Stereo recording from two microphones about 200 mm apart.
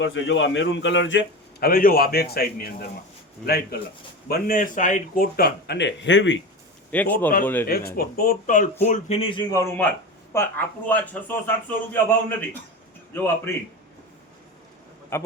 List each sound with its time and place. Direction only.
0.0 s a man's voice: 65° left (ahead or behind)
6.9 s a man's voice: 10° left (ahead or behind)
7.7 s a man's voice: 50° left (ahead or behind); by 11.8 s 10° left (ahead or behind)
13.1 s a man's voice: 10° left (ahead or behind)
15.1 s a man's voice: 10° left (ahead or behind)